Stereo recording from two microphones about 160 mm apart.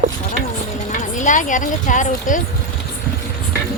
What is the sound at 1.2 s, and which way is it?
A woman's voice, 55° left (ahead or behind).